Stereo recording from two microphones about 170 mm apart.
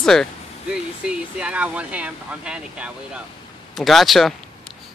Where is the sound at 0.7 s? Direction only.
5° right (ahead or behind).